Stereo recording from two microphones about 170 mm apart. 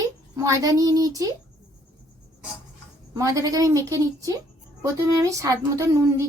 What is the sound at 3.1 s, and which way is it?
A child's voice, 20° right (ahead or behind).